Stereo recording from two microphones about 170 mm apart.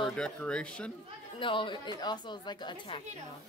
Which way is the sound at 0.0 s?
5° left (ahead or behind).